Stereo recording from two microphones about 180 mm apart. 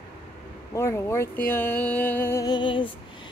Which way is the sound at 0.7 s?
15° left (ahead or behind).